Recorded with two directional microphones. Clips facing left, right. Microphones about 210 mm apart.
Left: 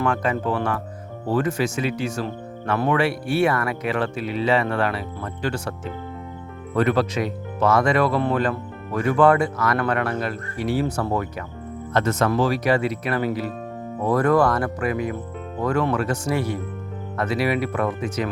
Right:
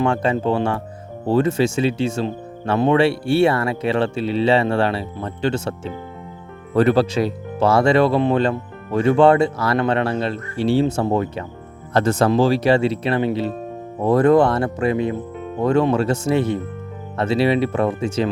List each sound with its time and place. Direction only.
0.0 s speech: 25° right (ahead or behind)